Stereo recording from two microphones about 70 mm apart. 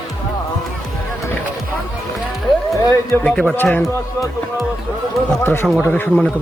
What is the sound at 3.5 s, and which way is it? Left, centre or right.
Speech, left.